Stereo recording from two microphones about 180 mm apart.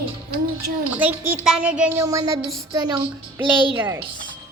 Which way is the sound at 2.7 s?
20° right (ahead or behind).